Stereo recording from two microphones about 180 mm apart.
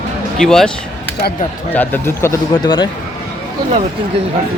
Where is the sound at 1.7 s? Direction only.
10° left (ahead or behind).